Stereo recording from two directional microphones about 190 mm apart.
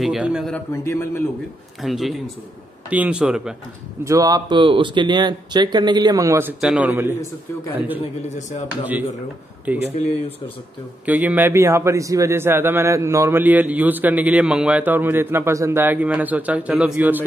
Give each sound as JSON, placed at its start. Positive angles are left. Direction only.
{"t": 0.0, "sound": "a man's voice", "side_deg": -5}
{"t": 0.8, "sound": "a man's voice", "side_deg": 10}
{"t": 1.8, "sound": "a man's voice", "side_deg": 0}
{"t": 4.0, "sound": "a man's voice", "side_deg": -15}
{"t": 8.0, "sound": "a man's voice", "side_deg": 40}
{"t": 9.7, "sound": "a man's voice", "side_deg": -10}
{"t": 11.1, "sound": "a man's voice", "side_deg": -10}